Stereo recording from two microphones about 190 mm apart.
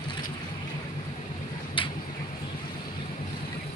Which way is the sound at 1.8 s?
25° left (ahead or behind).